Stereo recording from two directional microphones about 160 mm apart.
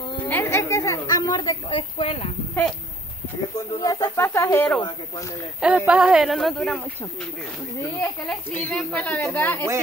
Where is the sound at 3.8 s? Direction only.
25° left (ahead or behind).